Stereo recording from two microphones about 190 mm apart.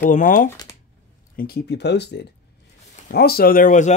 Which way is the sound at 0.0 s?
45° left (ahead or behind).